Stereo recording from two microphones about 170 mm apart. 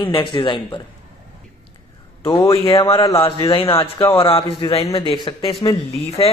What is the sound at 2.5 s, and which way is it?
Speech, 35° left (ahead or behind).